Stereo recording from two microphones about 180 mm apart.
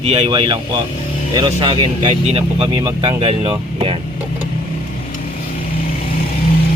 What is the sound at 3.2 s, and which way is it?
Speech, 30° right (ahead or behind).